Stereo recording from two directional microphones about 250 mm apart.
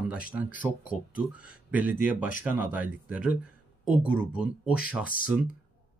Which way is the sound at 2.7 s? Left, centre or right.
Centre.